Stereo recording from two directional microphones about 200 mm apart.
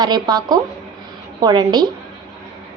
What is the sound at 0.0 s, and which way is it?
A woman's voice, 20° right (ahead or behind).